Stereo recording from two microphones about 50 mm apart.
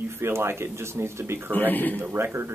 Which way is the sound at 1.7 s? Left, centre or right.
Left.